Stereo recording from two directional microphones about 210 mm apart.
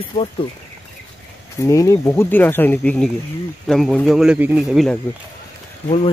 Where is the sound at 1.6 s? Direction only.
15° left (ahead or behind); by 4.9 s centre (ahead or behind).